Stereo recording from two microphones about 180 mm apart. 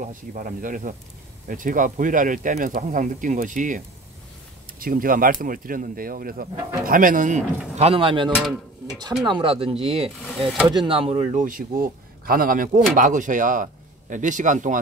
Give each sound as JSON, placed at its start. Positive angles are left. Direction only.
{"t": 0.0, "sound": "speech", "side_deg": -45}
{"t": 7.7, "sound": "chopping", "side_deg": -35}
{"t": 10.4, "sound": "speech", "side_deg": 0}
{"t": 10.7, "sound": "chopping", "side_deg": -30}
{"t": 11.4, "sound": "speech", "side_deg": -50}